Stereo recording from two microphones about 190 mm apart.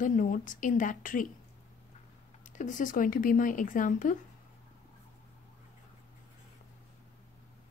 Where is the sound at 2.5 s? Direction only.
40° left (ahead or behind).